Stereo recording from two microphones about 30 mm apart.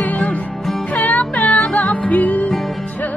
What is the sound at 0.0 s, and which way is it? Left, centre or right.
Music, left.